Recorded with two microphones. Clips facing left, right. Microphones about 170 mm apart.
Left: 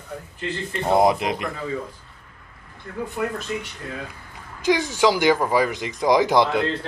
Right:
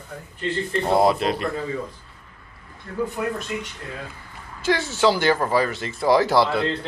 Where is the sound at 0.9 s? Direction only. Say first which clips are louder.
Left 1 dB; 20° left (ahead or behind).